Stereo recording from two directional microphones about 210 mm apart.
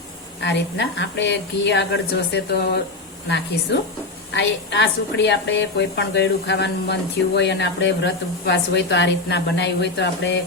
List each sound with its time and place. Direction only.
0.4 s a woman's voice: 55° left (ahead or behind)